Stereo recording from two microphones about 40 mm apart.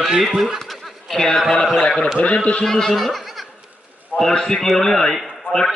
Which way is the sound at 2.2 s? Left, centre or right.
Left.